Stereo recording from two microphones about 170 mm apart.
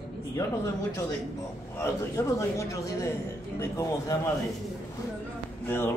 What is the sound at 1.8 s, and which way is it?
A man's voice, 15° left (ahead or behind).